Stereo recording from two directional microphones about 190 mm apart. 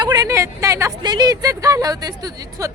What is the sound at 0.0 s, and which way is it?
Speech, 20° right (ahead or behind).